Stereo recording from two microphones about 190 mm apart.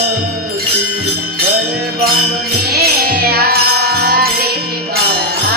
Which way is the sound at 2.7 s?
55° right (ahead or behind).